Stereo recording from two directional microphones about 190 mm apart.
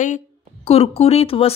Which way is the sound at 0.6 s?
30° left (ahead or behind).